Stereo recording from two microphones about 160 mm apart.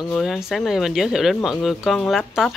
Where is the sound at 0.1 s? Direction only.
Centre (ahead or behind).